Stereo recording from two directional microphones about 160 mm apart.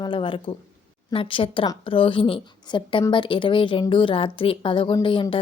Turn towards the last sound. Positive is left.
turn(degrees=30)  # may be behind; listen again after turning